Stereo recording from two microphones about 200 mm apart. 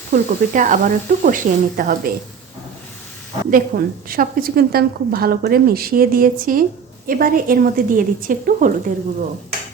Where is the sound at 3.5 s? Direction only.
45° right (ahead or behind).